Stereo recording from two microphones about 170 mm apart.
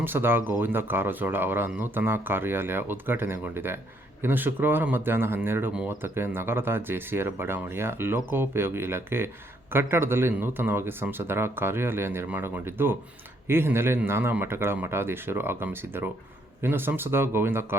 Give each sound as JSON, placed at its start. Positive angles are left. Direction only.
{"t": 0.0, "sound": "speech", "side_deg": -10}